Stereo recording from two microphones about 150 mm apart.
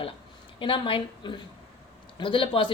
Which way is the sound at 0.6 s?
35° left (ahead or behind).